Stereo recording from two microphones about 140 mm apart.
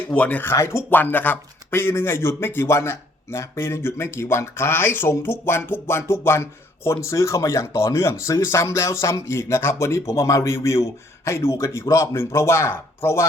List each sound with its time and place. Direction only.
0.1 s speech: 10° left (ahead or behind)